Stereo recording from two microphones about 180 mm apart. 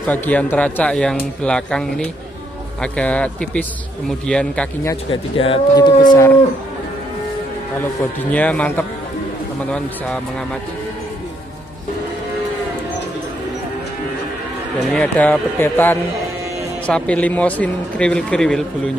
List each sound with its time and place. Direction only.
0.0 s speech: 10° left (ahead or behind)
5.1 s speech: 30° left (ahead or behind)
8.2 s speech: 10° left (ahead or behind)
14.9 s speech: 10° left (ahead or behind)